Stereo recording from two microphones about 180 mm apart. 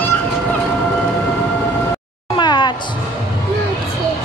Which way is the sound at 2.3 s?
25° left (ahead or behind).